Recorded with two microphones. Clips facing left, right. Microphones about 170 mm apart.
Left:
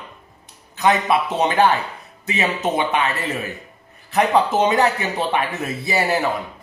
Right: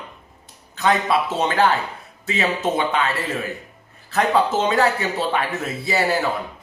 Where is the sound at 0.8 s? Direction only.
20° left (ahead or behind).